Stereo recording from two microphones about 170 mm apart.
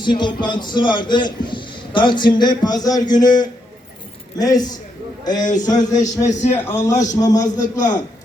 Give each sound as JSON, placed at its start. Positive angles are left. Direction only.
{"t": 0.0, "sound": "a man's voice", "side_deg": 30}